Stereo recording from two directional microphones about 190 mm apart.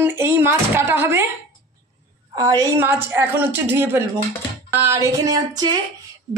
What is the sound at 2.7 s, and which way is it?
Speech, 10° right (ahead or behind).